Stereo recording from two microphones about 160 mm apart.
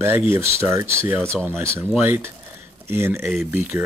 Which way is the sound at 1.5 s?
15° right (ahead or behind).